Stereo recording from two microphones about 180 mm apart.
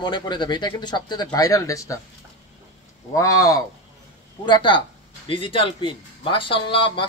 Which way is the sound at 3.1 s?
20° left (ahead or behind).